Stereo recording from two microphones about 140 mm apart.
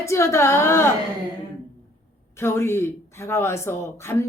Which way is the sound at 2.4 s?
20° left (ahead or behind).